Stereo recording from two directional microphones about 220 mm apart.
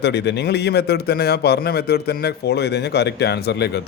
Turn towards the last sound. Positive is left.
turn(degrees=50)  # may be behind; listen again after turning